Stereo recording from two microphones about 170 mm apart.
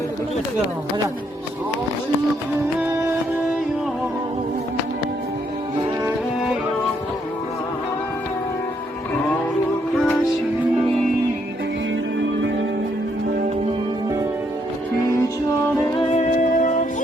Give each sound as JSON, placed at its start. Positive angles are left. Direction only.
{"t": 2.8, "sound": "music", "side_deg": -15}
{"t": 16.0, "sound": "music", "side_deg": 40}